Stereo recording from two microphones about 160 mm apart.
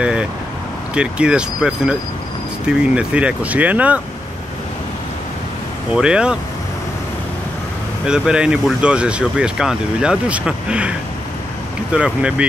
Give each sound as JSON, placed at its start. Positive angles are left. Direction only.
{"t": 0.0, "sound": "vehicle", "side_deg": -5}
{"t": 0.9, "sound": "speech", "side_deg": -5}
{"t": 5.9, "sound": "speech", "side_deg": -5}
{"t": 8.1, "sound": "speech", "side_deg": -5}